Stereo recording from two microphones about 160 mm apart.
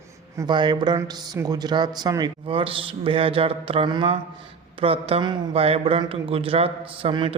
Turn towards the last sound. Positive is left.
turn(degrees=-30)  # may be behind; listen again after turning